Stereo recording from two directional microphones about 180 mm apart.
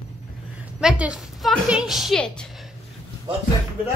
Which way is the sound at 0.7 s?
5° right (ahead or behind).